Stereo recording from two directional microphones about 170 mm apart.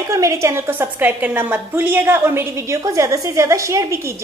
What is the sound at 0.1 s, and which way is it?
A woman's voice, 20° right (ahead or behind).